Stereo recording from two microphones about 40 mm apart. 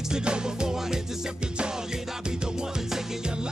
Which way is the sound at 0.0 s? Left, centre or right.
Right.